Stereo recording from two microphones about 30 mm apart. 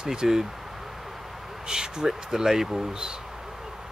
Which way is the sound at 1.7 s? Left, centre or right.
Right.